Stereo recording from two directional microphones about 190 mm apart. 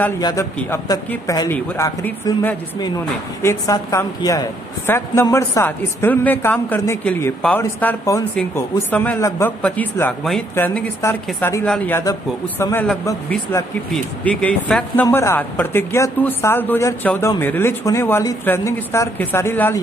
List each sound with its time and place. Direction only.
0.2 s a man's voice: 20° left (ahead or behind)
1.5 s speech: 10° left (ahead or behind)
3.4 s speech: 15° left (ahead or behind)